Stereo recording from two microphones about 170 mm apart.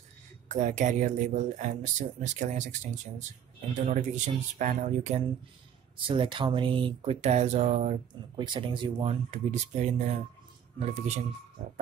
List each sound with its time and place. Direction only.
0.5 s speech: 45° right (ahead or behind)
8.4 s speech: 30° right (ahead or behind)